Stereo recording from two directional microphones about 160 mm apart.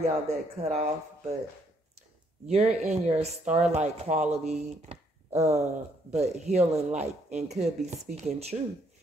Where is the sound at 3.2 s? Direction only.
45° right (ahead or behind).